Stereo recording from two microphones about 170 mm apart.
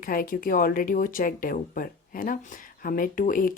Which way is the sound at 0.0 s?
55° left (ahead or behind).